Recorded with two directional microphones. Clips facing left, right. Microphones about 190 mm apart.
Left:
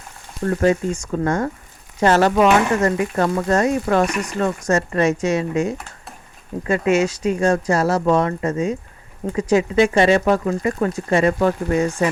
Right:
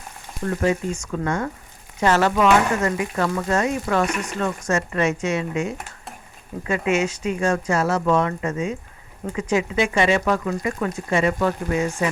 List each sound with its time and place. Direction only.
0.4 s speech: 45° left (ahead or behind)